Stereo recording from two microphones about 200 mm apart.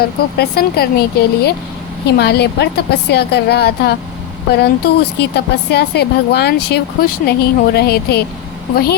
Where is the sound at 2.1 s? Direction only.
55° left (ahead or behind).